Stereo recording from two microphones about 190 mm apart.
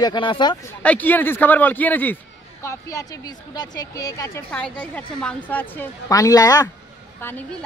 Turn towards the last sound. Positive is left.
turn(degrees=10)  # may be behind; listen again after turning